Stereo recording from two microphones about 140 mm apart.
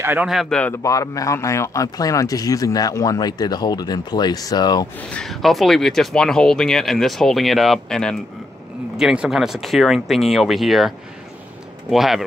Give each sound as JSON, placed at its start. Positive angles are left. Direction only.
{"t": 0.0, "sound": "a man's voice", "side_deg": -15}
{"t": 0.3, "sound": "speech", "side_deg": 0}
{"t": 0.8, "sound": "a man's voice", "side_deg": 25}
{"t": 5.1, "sound": "speech", "side_deg": 0}
{"t": 11.9, "sound": "speech", "side_deg": 0}